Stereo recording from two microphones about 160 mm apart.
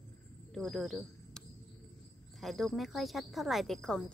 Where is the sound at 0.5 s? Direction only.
Centre (ahead or behind).